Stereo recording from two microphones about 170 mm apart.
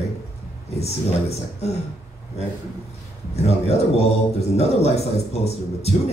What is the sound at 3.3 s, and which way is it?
A man's voice, 40° left (ahead or behind).